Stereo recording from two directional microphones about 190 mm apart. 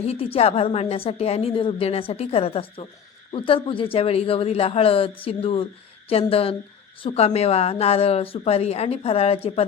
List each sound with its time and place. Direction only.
0.0 s a woman's voice: 30° left (ahead or behind)